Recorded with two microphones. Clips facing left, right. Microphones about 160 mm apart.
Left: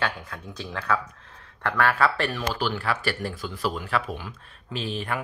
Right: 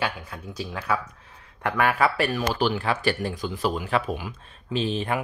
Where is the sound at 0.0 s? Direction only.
10° right (ahead or behind).